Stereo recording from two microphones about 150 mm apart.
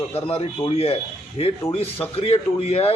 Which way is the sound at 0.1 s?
40° left (ahead or behind).